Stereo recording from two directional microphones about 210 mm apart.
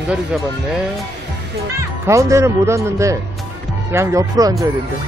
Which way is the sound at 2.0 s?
15° right (ahead or behind).